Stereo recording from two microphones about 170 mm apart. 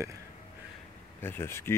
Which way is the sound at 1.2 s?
15° left (ahead or behind).